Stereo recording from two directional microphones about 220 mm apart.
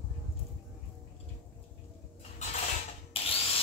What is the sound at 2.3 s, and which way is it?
Mechanisms, 30° left (ahead or behind).